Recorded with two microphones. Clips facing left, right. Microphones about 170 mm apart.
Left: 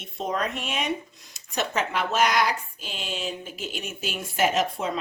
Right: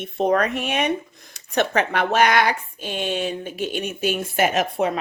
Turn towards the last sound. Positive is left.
turn(degrees=-65)  # may be behind; listen again after turning